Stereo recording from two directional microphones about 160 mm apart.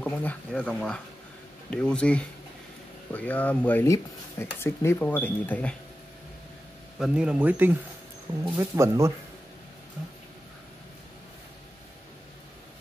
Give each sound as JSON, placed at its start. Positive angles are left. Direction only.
{"t": 0.0, "sound": "speech", "side_deg": 10}
{"t": 7.0, "sound": "speech", "side_deg": -5}